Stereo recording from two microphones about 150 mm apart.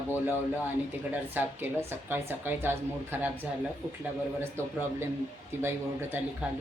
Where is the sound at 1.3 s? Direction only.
10° right (ahead or behind).